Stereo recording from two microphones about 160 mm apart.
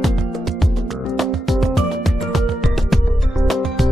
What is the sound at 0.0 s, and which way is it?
Music, centre (ahead or behind).